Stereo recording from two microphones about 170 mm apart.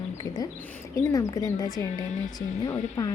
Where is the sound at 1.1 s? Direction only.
20° left (ahead or behind).